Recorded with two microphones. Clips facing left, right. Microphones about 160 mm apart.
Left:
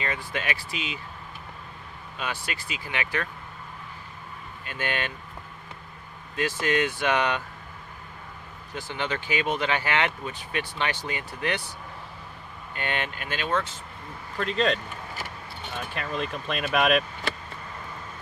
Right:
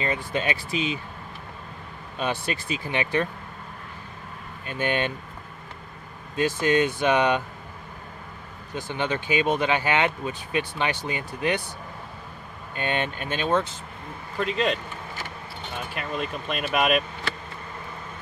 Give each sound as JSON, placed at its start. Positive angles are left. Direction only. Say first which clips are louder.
{"t": 0.0, "sound": "speech", "louder": "right 4 dB", "side_deg": -25}
{"t": 2.1, "sound": "speech", "louder": "right 6 dB", "side_deg": -25}
{"t": 4.6, "sound": "speech", "louder": "right 5 dB", "side_deg": -20}
{"t": 6.3, "sound": "speech", "louder": "right 4 dB", "side_deg": -20}
{"t": 8.7, "sound": "speech", "louder": "right 3 dB", "side_deg": -20}
{"t": 12.7, "sound": "speech", "louder": "right 4 dB", "side_deg": -20}
{"t": 14.4, "sound": "speech", "louder": "even", "side_deg": -5}
{"t": 15.9, "sound": "speech", "louder": "even", "side_deg": -5}